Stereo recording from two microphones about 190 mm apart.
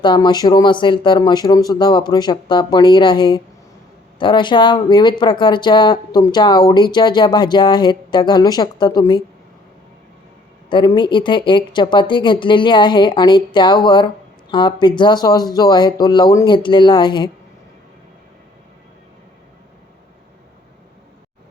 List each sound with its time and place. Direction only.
0.0 s speech: 25° left (ahead or behind)
10.7 s speech: 25° left (ahead or behind)